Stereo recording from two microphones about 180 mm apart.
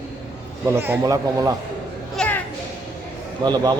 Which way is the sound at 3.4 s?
25° right (ahead or behind).